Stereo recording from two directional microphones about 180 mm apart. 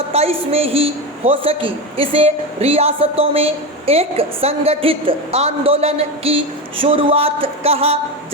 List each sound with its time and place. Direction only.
0.1 s a woman's voice: 35° right (ahead or behind)